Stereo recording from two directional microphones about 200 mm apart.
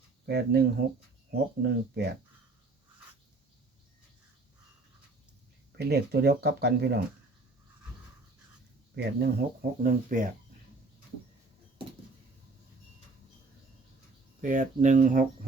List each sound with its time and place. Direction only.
0.3 s speech: 55° right (ahead or behind)
5.7 s speech: 55° right (ahead or behind)
9.0 s speech: 55° right (ahead or behind)
14.4 s speech: 40° right (ahead or behind)